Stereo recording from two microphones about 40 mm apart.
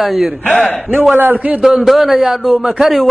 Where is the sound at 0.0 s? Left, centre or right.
Centre.